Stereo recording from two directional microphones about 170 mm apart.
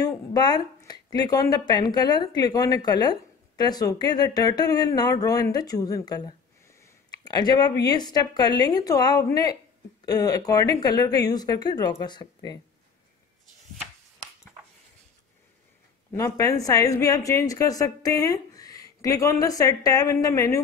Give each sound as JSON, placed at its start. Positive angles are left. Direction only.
{"t": 0.0, "sound": "a sound", "side_deg": 25}
{"t": 0.8, "sound": "a woman's voice", "side_deg": 25}
{"t": 16.1, "sound": "a woman's voice", "side_deg": 15}